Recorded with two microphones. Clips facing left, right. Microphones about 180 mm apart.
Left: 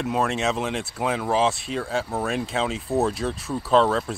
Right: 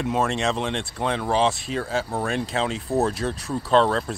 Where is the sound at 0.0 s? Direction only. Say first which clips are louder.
Even; centre (ahead or behind).